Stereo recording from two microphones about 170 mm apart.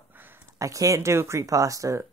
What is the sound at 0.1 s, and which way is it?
Speech, 10° right (ahead or behind).